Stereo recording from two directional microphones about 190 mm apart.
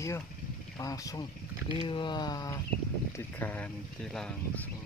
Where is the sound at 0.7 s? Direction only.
20° left (ahead or behind).